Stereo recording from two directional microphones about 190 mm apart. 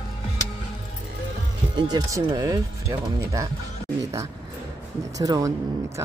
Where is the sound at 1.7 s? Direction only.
20° right (ahead or behind).